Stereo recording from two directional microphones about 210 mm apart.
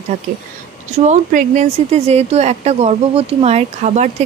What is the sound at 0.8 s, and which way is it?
Speech, 35° right (ahead or behind).